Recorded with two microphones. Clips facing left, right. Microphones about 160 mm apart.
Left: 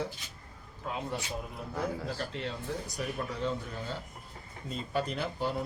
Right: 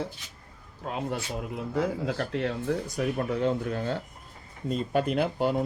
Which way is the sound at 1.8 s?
85° right.